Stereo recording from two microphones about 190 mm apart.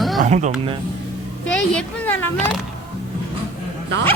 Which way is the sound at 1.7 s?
10° left (ahead or behind).